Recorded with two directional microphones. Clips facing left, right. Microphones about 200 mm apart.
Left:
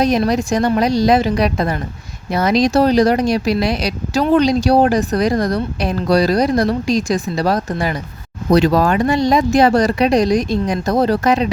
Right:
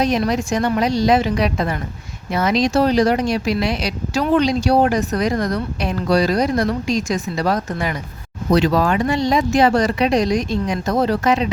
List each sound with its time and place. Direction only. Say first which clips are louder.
0.0 s speech: left 3 dB; 40° left (ahead or behind)